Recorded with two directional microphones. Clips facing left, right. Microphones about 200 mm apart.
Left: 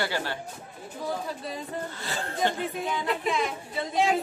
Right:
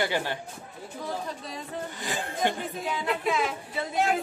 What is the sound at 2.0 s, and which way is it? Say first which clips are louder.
Speech: even; 15° right (ahead or behind).